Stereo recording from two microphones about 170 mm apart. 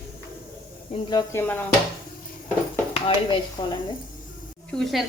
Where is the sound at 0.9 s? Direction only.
25° left (ahead or behind).